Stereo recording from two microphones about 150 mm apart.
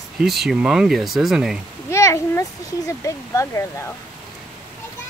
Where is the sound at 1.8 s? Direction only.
20° left (ahead or behind).